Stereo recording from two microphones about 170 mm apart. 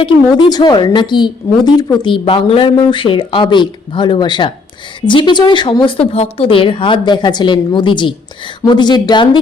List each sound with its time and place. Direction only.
0.0 s a woman's voice: 25° left (ahead or behind)